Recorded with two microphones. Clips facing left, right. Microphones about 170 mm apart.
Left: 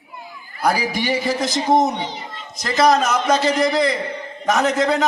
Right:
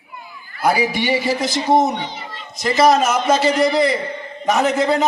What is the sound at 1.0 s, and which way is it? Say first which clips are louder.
A man's voice: right 2 dB; 5° right (ahead or behind).